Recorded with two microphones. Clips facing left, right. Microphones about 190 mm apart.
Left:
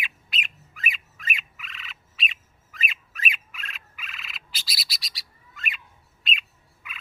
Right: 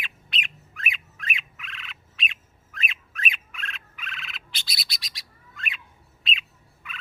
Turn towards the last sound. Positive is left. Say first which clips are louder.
# right 2 dB
turn(degrees=0)  # may be behind; listen again after turning